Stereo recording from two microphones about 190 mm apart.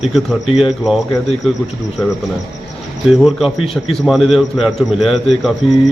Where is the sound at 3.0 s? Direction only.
Centre (ahead or behind).